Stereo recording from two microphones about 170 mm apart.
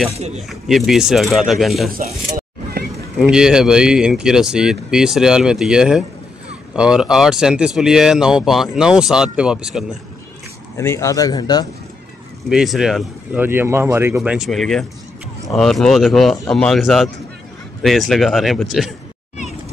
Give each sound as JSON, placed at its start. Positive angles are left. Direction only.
{"t": 0.1, "sound": "speech", "side_deg": -40}
{"t": 0.5, "sound": "speech", "side_deg": 0}
{"t": 2.3, "sound": "vehicle", "side_deg": -70}
{"t": 3.2, "sound": "speech", "side_deg": -5}
{"t": 10.8, "sound": "speech", "side_deg": 15}
{"t": 12.4, "sound": "speech", "side_deg": -5}